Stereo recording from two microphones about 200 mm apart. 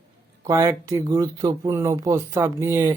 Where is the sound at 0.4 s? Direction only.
15° right (ahead or behind).